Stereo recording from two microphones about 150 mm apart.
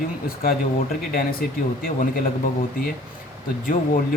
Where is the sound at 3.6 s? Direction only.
70° left (ahead or behind).